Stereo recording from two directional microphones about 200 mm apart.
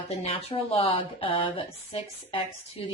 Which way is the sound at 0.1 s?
30° left (ahead or behind).